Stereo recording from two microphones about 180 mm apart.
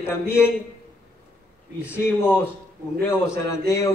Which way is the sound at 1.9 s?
10° left (ahead or behind).